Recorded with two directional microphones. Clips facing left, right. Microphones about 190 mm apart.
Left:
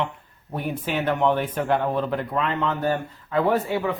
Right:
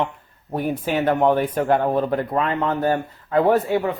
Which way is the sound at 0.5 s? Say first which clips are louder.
Right 4 dB; 45° right (ahead or behind).